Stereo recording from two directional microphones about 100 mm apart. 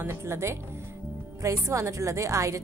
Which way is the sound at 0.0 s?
25° right (ahead or behind).